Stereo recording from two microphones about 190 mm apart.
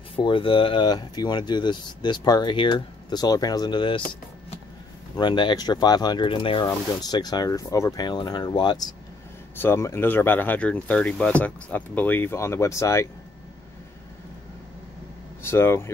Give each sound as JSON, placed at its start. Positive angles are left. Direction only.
{"t": 0.1, "sound": "speech", "side_deg": 25}
{"t": 5.1, "sound": "speech", "side_deg": 25}
{"t": 15.4, "sound": "speech", "side_deg": 15}